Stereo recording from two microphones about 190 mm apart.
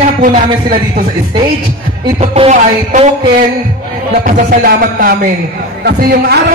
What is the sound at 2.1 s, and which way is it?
Speech, 30° right (ahead or behind).